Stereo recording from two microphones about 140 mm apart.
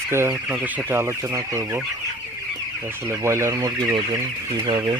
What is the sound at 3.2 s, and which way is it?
Speech, 20° right (ahead or behind).